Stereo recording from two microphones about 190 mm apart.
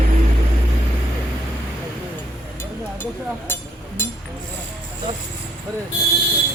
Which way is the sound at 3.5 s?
10° left (ahead or behind).